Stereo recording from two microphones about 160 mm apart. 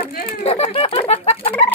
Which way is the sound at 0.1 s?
65° left (ahead or behind).